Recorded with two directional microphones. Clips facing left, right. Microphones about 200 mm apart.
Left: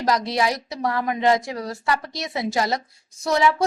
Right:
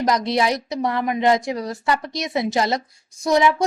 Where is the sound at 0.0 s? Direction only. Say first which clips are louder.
Right 2 dB; 20° right (ahead or behind).